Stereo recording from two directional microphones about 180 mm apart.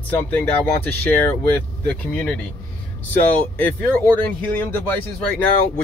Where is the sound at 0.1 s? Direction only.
10° left (ahead or behind).